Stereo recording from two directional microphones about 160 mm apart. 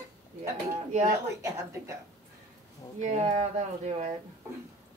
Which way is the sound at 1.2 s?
15° right (ahead or behind).